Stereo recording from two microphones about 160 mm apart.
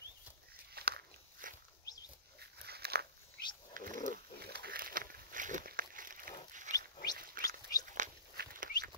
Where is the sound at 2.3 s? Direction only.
90° right.